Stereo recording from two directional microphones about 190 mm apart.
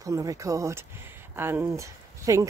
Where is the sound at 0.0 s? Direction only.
15° right (ahead or behind).